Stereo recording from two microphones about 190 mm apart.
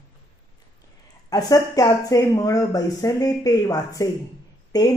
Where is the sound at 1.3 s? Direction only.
20° left (ahead or behind).